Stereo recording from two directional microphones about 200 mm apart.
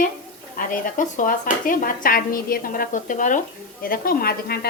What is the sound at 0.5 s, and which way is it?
Speech, 40° left (ahead or behind).